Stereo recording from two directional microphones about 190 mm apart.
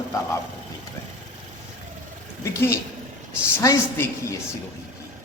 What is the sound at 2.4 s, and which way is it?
A man's voice, 15° left (ahead or behind).